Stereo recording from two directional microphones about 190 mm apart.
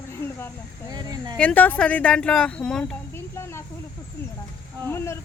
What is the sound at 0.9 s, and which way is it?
Speech, 20° right (ahead or behind).